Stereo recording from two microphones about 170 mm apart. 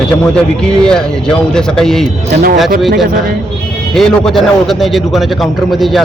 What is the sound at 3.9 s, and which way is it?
A man's voice, centre (ahead or behind).